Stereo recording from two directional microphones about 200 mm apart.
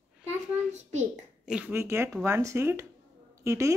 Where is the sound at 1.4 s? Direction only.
5° right (ahead or behind).